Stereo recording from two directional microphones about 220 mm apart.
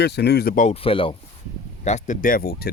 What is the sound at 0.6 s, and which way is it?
Speech, 25° left (ahead or behind).